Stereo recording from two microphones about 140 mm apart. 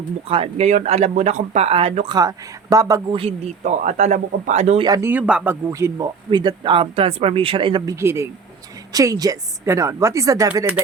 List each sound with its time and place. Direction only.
0.3 s speech: 50° right (ahead or behind)
2.1 s a woman's voice: 25° right (ahead or behind)
3.1 s speech: 40° right (ahead or behind)
3.6 s speech: 55° right (ahead or behind)
4.8 s a woman's voice: 25° right (ahead or behind)
5.0 s speech: 10° right (ahead or behind)
6.3 s speech: 35° right (ahead or behind)
7.9 s a woman's voice: 20° right (ahead or behind)